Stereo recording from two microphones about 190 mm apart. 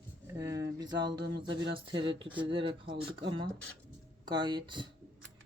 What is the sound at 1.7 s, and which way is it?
Speech, 25° right (ahead or behind).